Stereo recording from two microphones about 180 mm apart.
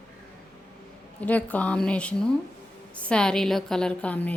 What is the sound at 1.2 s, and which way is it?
A woman's voice, 10° left (ahead or behind).